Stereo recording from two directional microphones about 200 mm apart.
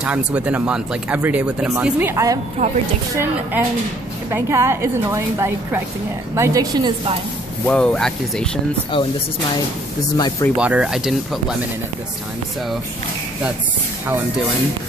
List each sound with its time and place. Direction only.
0.0 s speech: 5° right (ahead or behind)
2.6 s speech: 35° right (ahead or behind)
4.3 s a woman's voice: 15° right (ahead or behind)
7.6 s speech: 5° left (ahead or behind)
8.9 s speech: 25° left (ahead or behind)
10.1 s speech: 20° left (ahead or behind)
10.5 s speech: 5° right (ahead or behind)